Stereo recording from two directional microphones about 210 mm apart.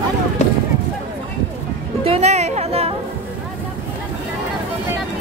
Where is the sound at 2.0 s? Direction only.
30° right (ahead or behind).